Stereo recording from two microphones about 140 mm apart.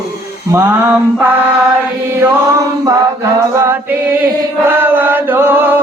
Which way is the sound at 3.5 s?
15° right (ahead or behind).